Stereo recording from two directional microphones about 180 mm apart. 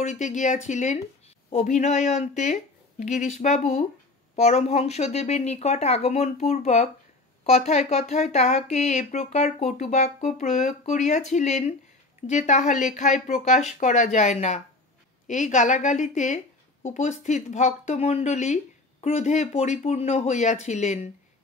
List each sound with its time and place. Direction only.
0.0 s a woman's voice: 40° left (ahead or behind)